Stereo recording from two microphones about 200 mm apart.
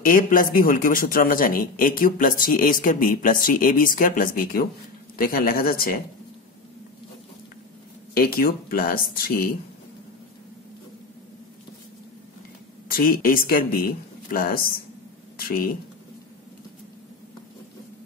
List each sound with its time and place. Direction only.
0.0 s a man's voice: 45° left (ahead or behind)
8.2 s a man's voice: 50° left (ahead or behind)
12.9 s a man's voice: 45° left (ahead or behind)